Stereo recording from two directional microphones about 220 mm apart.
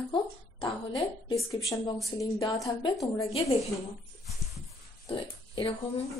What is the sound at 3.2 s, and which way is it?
Speech, 25° left (ahead or behind).